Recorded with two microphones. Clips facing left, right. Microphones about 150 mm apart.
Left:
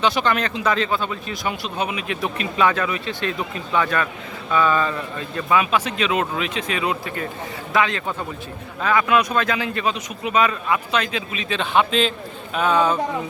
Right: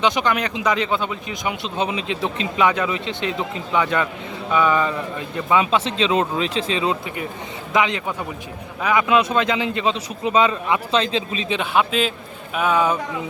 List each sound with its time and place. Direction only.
0.0 s a man's voice: 15° right (ahead or behind)
11.5 s a man's voice: 10° right (ahead or behind)